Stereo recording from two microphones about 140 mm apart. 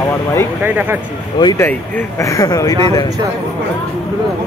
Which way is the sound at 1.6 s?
15° left (ahead or behind).